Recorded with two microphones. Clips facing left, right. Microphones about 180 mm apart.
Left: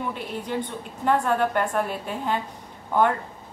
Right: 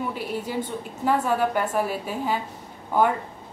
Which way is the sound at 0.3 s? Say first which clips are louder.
Right 1 dB; 5° right (ahead or behind).